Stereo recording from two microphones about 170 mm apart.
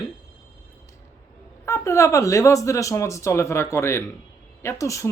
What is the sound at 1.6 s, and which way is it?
Speech, 15° left (ahead or behind).